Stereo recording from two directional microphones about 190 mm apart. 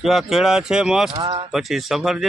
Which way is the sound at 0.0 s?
Centre (ahead or behind).